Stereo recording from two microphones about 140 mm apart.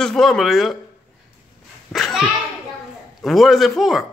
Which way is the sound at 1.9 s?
Centre (ahead or behind).